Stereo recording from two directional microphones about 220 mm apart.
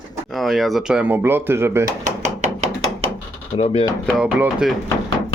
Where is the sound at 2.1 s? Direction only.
30° right (ahead or behind).